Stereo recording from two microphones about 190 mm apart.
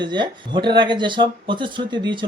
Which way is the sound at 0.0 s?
25° right (ahead or behind).